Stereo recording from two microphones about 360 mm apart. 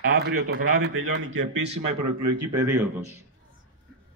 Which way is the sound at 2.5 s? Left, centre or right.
Centre.